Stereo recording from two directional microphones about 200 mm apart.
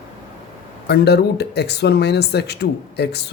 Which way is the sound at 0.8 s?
55° left (ahead or behind).